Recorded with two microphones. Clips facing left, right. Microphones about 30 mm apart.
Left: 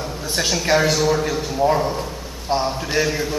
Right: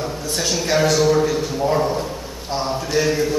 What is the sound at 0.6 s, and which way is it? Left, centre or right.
A man's voice, centre.